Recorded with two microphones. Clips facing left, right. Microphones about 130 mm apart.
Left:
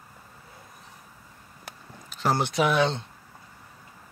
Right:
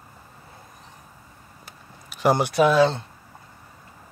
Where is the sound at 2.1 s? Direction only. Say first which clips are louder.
Right 5 dB; 10° right (ahead or behind).